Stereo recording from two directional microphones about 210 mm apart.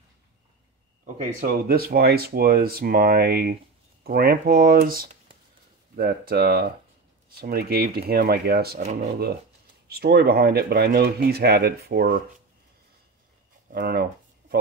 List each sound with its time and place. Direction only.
1.0 s speech: 35° right (ahead or behind)
9.8 s speech: 50° right (ahead or behind)
13.7 s speech: 45° right (ahead or behind)